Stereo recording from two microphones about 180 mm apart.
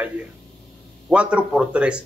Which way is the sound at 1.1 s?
5° right (ahead or behind).